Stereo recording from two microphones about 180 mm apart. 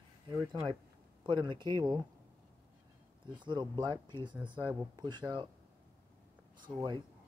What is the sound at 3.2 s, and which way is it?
Speech, 25° right (ahead or behind).